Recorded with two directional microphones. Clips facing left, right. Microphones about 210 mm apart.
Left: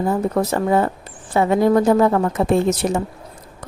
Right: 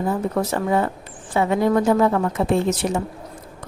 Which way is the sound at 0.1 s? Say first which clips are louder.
Left 3 dB; 40° left (ahead or behind).